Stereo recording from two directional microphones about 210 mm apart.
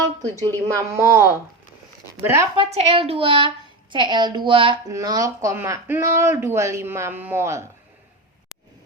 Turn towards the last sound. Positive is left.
turn(degrees=-15)  # may be behind; listen again after turning